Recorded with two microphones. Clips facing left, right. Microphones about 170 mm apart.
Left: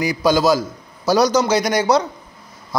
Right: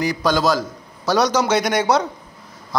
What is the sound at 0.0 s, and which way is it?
A man's voice, 10° left (ahead or behind).